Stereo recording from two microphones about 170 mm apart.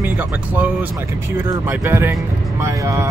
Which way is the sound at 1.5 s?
15° right (ahead or behind).